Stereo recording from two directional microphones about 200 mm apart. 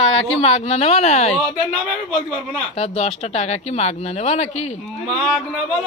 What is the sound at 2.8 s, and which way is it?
Speech, 30° left (ahead or behind).